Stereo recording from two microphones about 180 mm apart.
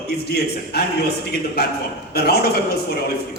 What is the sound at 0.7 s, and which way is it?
Speech, 60° left (ahead or behind).